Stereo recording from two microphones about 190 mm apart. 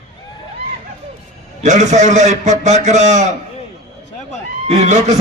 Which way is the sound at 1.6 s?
40° right (ahead or behind).